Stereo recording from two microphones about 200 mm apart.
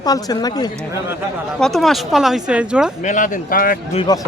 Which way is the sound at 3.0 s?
40° left (ahead or behind).